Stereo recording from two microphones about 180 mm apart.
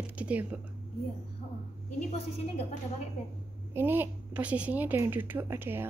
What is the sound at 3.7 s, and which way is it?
A woman's voice, 10° right (ahead or behind).